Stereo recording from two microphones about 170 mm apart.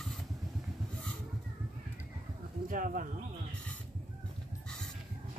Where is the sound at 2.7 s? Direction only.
55° right (ahead or behind).